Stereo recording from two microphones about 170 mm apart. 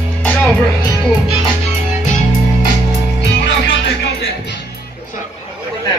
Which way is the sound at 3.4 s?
90° left.